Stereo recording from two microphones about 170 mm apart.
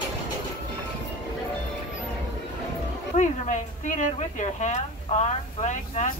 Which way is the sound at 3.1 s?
45° left (ahead or behind).